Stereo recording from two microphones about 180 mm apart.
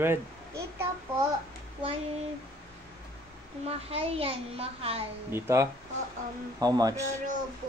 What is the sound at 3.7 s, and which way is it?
A child's voice, 35° right (ahead or behind).